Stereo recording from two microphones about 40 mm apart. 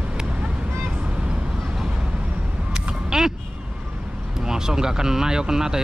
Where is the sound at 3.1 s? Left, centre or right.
Centre.